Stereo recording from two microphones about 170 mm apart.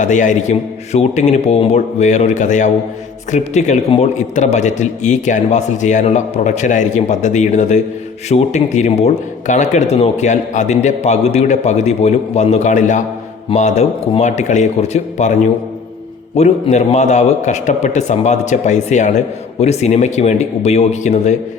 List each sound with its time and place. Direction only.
0.0 s a man's voice: 45° left (ahead or behind)